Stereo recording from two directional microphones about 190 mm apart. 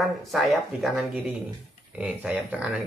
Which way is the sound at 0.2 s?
Centre (ahead or behind).